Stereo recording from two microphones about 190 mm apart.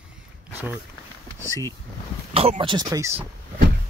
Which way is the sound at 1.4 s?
15° left (ahead or behind).